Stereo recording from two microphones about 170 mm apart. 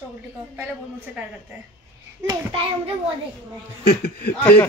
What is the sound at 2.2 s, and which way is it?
Speech, 30° right (ahead or behind).